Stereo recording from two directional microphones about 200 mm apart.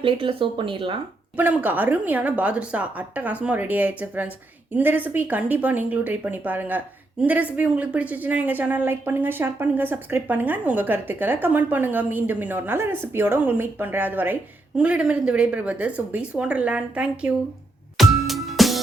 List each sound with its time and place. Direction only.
0.0 s speech: 25° right (ahead or behind)
1.4 s speech: 10° right (ahead or behind)
17.9 s music: centre (ahead or behind)